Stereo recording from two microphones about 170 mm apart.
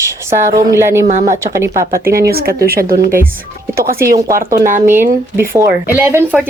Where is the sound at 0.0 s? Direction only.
15° right (ahead or behind).